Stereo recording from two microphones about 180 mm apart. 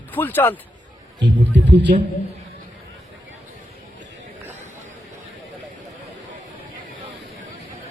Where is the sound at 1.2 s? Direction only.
75° right (ahead or behind).